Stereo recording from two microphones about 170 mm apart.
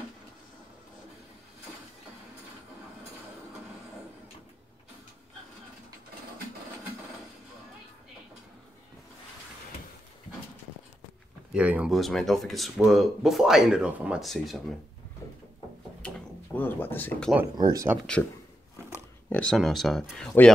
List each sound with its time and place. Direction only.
11.5 s speech: 5° right (ahead or behind)
16.5 s speech: 10° left (ahead or behind)
17.6 s speech: 25° right (ahead or behind)
18.9 s speech: 10° left (ahead or behind)